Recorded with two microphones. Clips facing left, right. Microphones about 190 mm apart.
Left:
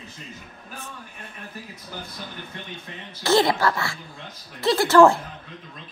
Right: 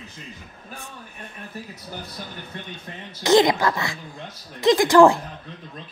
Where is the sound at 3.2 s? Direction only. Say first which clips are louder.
Right 3 dB; 15° right (ahead or behind).